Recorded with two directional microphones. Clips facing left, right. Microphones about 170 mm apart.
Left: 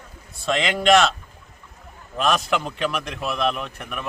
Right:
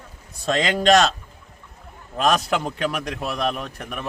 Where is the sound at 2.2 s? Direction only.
40° right (ahead or behind).